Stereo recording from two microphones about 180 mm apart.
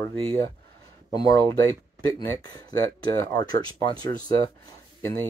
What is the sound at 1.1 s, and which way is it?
Speech, 20° left (ahead or behind).